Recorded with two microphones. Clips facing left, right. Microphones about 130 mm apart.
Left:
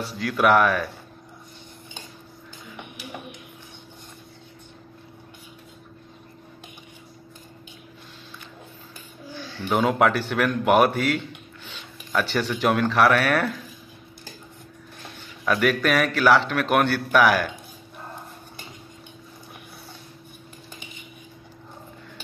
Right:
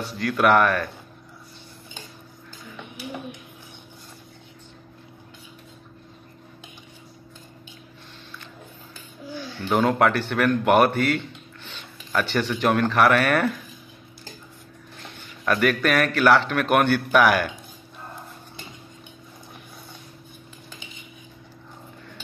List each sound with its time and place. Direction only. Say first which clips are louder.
0.0 s a man's voice: even; 5° left (ahead or behind)
2.7 s music: right 3 dB; 20° left (ahead or behind)
9.7 s a man's voice: even; 5° left (ahead or behind)
15.4 s a man's voice: even; centre (ahead or behind)